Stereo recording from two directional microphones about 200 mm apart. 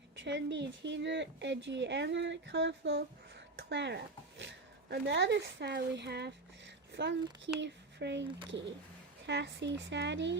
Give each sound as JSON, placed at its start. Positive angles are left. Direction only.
{"t": 0.3, "sound": "speech", "side_deg": -60}